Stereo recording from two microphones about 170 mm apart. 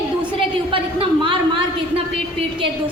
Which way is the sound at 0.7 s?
30° right (ahead or behind).